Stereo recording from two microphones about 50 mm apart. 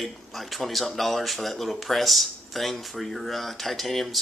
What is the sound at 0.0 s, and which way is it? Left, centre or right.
Speech, centre.